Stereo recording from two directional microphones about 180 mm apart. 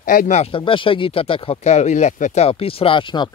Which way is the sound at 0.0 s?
50° left (ahead or behind).